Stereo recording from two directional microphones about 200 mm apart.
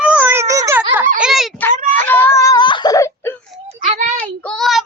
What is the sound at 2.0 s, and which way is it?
Whimper, 10° left (ahead or behind).